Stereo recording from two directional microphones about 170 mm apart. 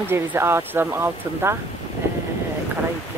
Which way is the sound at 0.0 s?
15° right (ahead or behind).